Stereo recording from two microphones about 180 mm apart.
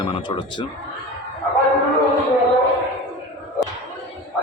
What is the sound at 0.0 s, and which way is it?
Speech, 25° left (ahead or behind).